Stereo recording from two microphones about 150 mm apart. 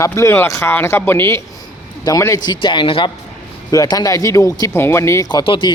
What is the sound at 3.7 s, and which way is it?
A man's voice, 25° left (ahead or behind).